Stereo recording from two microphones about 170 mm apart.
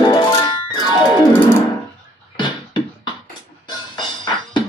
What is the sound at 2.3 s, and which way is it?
Music, 25° left (ahead or behind).